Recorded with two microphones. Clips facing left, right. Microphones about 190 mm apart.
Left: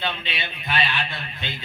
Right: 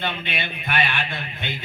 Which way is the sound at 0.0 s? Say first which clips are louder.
Right 2 dB; 50° right (ahead or behind).